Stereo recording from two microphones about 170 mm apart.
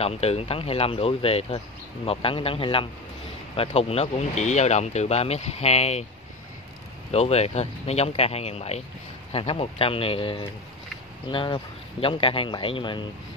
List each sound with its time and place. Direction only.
0.0 s speech: 35° left (ahead or behind)
7.1 s speech: 35° left (ahead or behind)